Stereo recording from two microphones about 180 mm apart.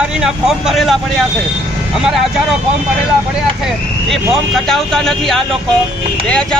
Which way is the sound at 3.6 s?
Centre (ahead or behind).